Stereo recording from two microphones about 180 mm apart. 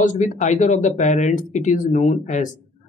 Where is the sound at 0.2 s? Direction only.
40° left (ahead or behind).